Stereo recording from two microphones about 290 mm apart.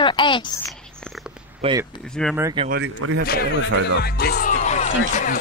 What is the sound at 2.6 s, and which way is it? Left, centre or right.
Speech, right.